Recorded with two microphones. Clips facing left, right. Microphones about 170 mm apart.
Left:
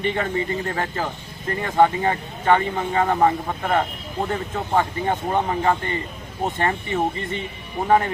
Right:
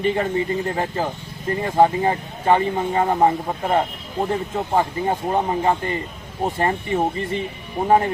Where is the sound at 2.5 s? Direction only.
20° right (ahead or behind).